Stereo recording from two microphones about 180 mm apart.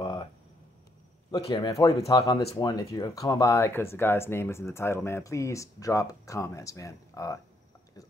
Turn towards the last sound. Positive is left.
turn(degrees=20)  # may be behind; listen again after turning